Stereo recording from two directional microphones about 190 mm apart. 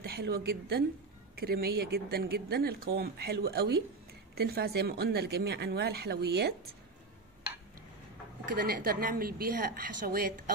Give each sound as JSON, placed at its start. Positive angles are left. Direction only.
{"t": 0.0, "sound": "a woman's voice", "side_deg": -55}
{"t": 8.5, "sound": "a woman's voice", "side_deg": -55}